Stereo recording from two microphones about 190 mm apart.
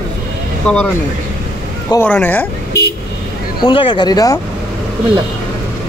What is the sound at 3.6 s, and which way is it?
Speech, 25° left (ahead or behind).